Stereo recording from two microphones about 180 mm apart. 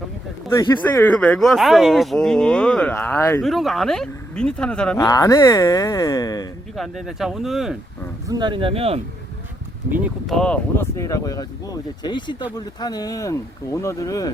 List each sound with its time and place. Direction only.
0.5 s speech: 15° left (ahead or behind)
3.4 s speech: centre (ahead or behind)
4.9 s speech: 20° left (ahead or behind)
6.7 s speech: centre (ahead or behind)
8.3 s speech: 25° right (ahead or behind)
10.2 s speech: centre (ahead or behind); by 14.3 s 20° left (ahead or behind)